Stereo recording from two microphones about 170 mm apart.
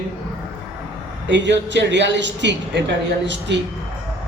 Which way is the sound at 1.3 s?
90° right.